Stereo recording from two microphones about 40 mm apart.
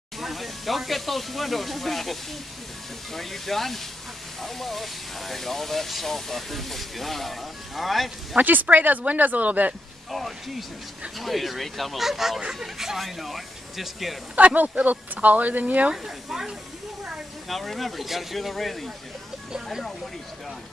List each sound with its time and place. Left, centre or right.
0.2 s speech: centre
8.4 s speech: right
10.1 s speech: centre
14.3 s speech: right
15.9 s speech: centre
17.0 s a sound: centre
17.6 s speech: centre